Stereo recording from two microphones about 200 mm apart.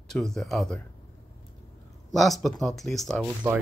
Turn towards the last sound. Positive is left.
turn(degrees=0)  # may be behind; listen again after turning